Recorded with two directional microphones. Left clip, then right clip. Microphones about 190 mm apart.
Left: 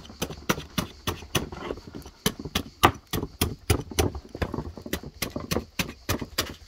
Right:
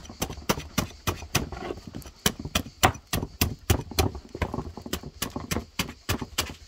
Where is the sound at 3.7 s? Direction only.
15° right (ahead or behind).